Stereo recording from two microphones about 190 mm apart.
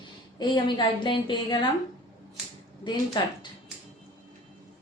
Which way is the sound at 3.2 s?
25° left (ahead or behind).